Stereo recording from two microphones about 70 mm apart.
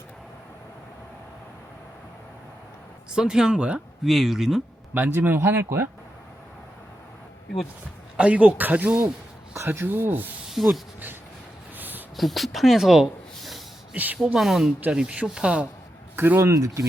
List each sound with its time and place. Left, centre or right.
3.1 s speech: centre
4.9 s speech: right
8.1 s speech: centre
9.7 s speech: right
10.5 s speech: centre
11.8 s a sound: right
12.1 s speech: centre
13.9 s speech: right
14.3 s speech: centre
14.8 s speech: centre
16.1 s speech: right
16.4 s speech: right